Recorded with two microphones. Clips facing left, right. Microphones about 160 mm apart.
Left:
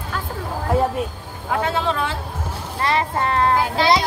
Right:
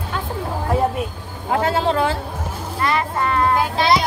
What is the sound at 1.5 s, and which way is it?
Speech, 35° right (ahead or behind).